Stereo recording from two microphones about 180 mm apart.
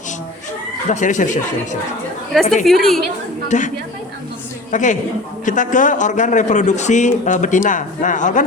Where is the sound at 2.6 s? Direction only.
Centre (ahead or behind).